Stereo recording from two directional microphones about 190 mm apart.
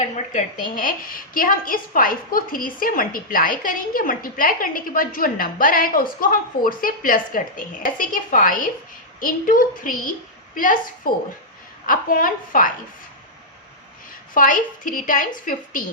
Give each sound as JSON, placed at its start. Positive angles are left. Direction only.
{"t": 0.0, "sound": "a woman's voice", "side_deg": 40}
{"t": 14.3, "sound": "a woman's voice", "side_deg": 45}